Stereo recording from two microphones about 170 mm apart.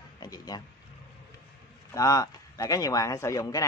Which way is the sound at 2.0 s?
20° left (ahead or behind).